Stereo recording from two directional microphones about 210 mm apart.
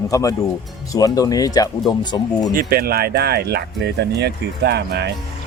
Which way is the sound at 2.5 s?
45° right (ahead or behind).